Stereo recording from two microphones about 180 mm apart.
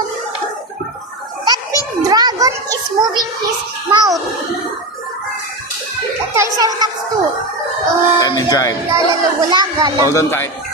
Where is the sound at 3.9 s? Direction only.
20° right (ahead or behind).